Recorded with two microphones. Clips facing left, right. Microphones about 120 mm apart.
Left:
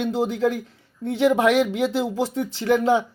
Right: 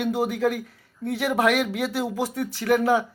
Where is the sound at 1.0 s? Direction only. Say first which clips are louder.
Left 4 dB; 20° left (ahead or behind).